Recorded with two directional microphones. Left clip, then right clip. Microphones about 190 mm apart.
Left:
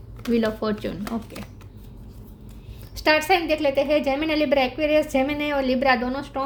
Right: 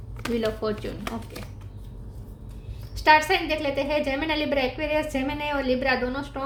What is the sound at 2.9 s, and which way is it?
A woman's voice, 50° left (ahead or behind).